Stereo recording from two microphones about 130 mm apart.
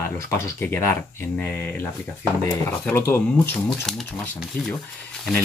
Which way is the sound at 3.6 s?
Centre (ahead or behind).